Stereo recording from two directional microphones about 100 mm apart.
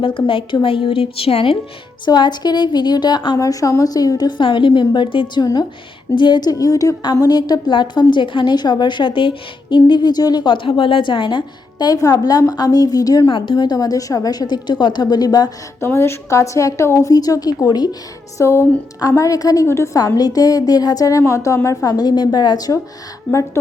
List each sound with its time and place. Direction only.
0.3 s a woman's voice: 60° left (ahead or behind)
2.0 s a woman's voice: 45° left (ahead or behind)
3.3 s a woman's voice: 35° left (ahead or behind)
13.3 s a woman's voice: 60° left (ahead or behind); by 15.5 s 40° left (ahead or behind)
15.8 s a woman's voice: 25° left (ahead or behind); by 17.9 s 40° left (ahead or behind)
18.3 s a woman's voice: 30° left (ahead or behind)
19.6 s a woman's voice: 25° left (ahead or behind)
20.0 s a woman's voice: 40° left (ahead or behind)